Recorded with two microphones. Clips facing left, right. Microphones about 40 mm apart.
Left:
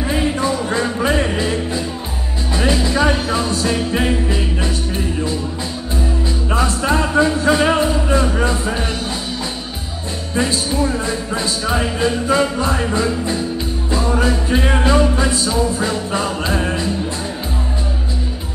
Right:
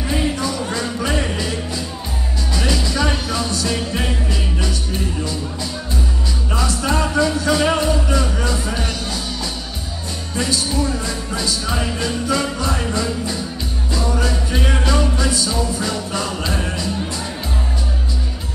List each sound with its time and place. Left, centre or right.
0.0 s music: centre
6.5 s music: left
10.3 s music: left